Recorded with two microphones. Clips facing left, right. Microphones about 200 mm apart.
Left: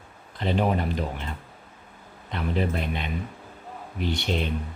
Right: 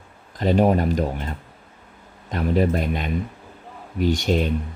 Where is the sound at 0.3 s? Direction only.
45° right (ahead or behind).